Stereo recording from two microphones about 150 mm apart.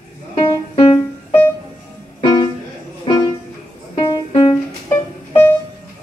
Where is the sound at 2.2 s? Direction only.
30° left (ahead or behind).